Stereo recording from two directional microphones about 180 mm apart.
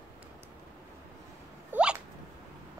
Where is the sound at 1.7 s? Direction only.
10° right (ahead or behind).